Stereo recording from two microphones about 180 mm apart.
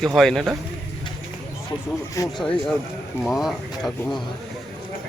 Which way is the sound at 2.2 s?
20° left (ahead or behind).